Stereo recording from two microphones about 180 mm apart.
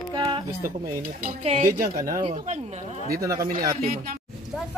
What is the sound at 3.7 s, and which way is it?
Speech, 55° right (ahead or behind).